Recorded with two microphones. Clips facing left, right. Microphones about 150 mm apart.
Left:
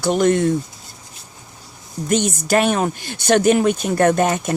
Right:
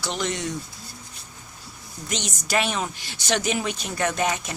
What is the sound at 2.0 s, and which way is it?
Speech, 50° left (ahead or behind).